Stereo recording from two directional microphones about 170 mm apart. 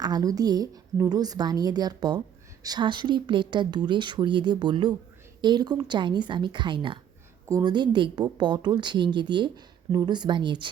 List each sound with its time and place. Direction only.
0.0 s a woman's voice: 20° right (ahead or behind)